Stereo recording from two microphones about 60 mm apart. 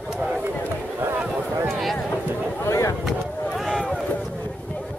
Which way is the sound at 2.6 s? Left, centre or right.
Left.